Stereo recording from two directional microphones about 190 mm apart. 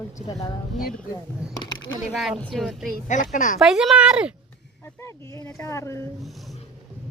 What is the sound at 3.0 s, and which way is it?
Speech, 40° left (ahead or behind).